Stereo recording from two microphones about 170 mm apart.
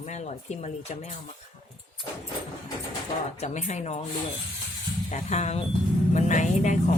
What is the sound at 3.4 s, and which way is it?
Speech, 40° left (ahead or behind).